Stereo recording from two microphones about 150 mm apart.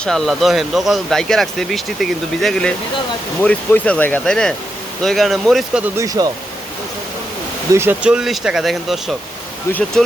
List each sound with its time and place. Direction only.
0.0 s speech: centre (ahead or behind)
5.8 s speech: 20° right (ahead or behind)
7.7 s speech: 15° right (ahead or behind)